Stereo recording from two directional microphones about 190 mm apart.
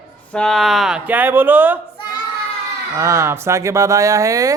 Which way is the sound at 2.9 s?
15° right (ahead or behind).